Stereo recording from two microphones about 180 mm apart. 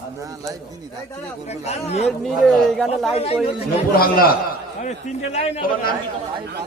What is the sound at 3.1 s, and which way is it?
Speech, 35° left (ahead or behind).